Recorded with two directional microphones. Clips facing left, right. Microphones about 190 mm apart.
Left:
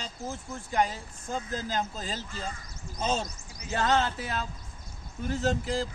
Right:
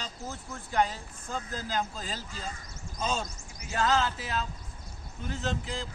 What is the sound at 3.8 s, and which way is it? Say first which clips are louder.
Speech: left 1 dB; 35° left (ahead or behind).